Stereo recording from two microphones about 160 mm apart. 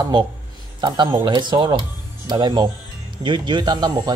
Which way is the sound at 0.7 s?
30° right (ahead or behind).